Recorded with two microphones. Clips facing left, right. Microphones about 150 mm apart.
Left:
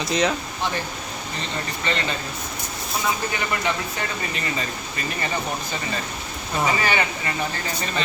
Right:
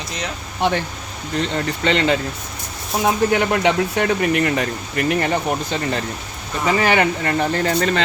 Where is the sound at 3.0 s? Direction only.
70° right (ahead or behind).